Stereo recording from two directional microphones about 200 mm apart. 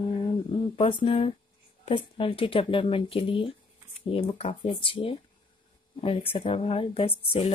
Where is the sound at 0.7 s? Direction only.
25° left (ahead or behind).